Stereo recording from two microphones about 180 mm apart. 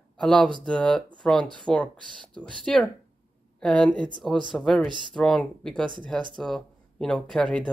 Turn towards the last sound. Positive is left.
turn(degrees=5)  # may be behind; listen again after turning